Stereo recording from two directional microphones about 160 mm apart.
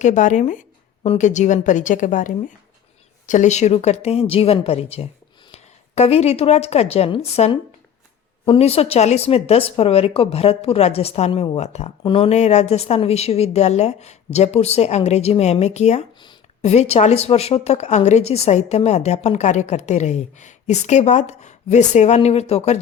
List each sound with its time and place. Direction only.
0.0 s a woman's voice: 50° left (ahead or behind)